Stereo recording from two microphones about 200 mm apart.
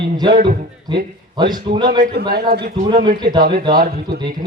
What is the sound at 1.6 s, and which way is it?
Speech, 25° right (ahead or behind).